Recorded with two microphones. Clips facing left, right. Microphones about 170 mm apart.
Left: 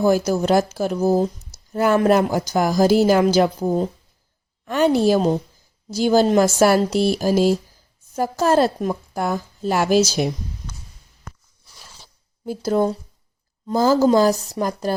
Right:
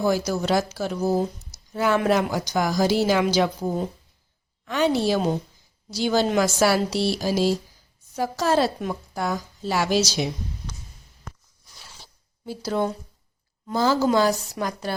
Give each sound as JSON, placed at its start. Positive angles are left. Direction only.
{"t": 0.3, "sound": "speech", "side_deg": 50}
{"t": 12.5, "sound": "a woman's voice", "side_deg": 45}